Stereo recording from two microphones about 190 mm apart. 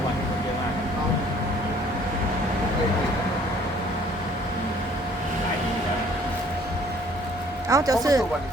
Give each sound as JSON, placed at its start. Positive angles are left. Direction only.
{"t": 7.7, "sound": "speech", "side_deg": -20}